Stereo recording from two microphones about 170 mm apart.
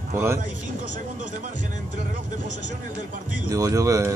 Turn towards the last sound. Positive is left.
turn(degrees=-20)  # may be behind; listen again after turning